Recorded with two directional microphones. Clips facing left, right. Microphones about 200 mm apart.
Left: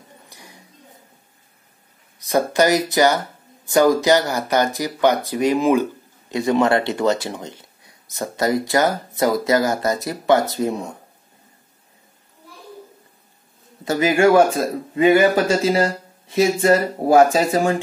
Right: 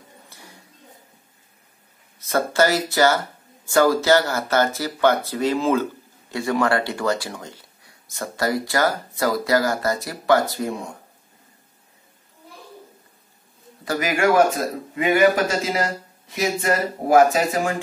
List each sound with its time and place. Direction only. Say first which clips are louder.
0.3 s a sound: left 1 dB; 15° left (ahead or behind)
2.1 s speech: left 2 dB; 15° left (ahead or behind)
13.8 s speech: left 5 dB; 25° left (ahead or behind)